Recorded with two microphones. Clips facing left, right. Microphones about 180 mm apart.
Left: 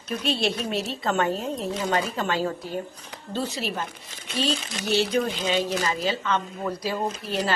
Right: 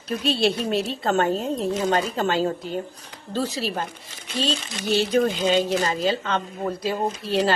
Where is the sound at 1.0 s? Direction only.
35° right (ahead or behind).